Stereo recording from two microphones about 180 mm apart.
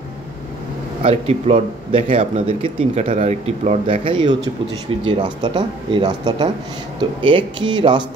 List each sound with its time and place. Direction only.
1.0 s a man's voice: 35° right (ahead or behind)